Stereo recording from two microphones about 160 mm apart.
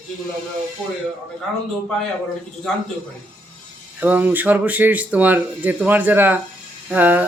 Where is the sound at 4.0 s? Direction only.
10° right (ahead or behind).